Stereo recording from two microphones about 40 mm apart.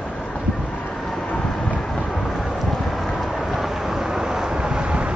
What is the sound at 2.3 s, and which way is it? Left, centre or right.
Vehicle, centre.